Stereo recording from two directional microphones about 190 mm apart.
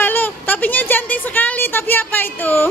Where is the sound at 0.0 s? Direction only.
10° left (ahead or behind).